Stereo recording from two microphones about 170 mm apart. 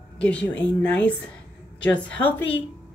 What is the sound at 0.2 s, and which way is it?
A woman's voice, 5° left (ahead or behind).